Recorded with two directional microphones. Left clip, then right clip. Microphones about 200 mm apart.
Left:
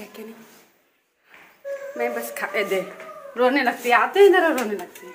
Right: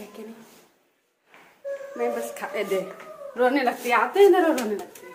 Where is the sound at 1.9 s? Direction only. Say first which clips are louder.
Left 1 dB; centre (ahead or behind).